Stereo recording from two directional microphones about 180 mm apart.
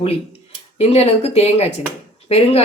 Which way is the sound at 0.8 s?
35° left (ahead or behind).